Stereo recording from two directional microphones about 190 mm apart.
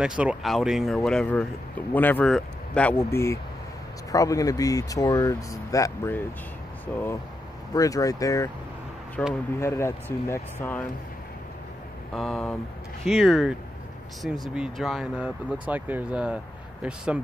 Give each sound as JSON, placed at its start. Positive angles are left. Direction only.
{"t": 0.0, "sound": "speech", "side_deg": -5}
{"t": 12.1, "sound": "speech", "side_deg": 0}